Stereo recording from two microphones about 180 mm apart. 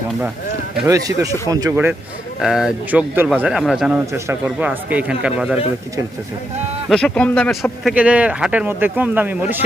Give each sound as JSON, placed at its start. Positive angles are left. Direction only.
{"t": 0.9, "sound": "a man's voice", "side_deg": -20}
{"t": 6.8, "sound": "speech", "side_deg": 5}